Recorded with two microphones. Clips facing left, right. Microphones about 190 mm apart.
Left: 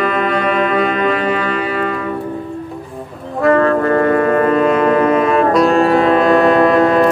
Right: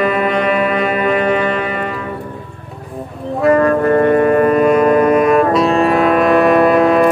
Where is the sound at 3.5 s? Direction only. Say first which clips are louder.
Right 1 dB; 15° right (ahead or behind).